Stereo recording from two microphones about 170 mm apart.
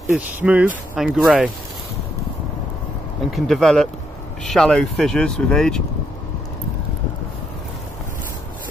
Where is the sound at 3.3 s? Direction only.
Centre (ahead or behind).